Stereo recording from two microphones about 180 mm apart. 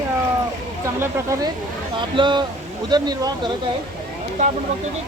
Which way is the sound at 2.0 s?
25° right (ahead or behind).